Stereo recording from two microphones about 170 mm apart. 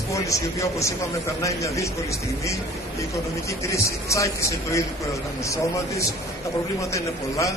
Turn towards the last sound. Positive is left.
turn(degrees=20)  # may be behind; listen again after turning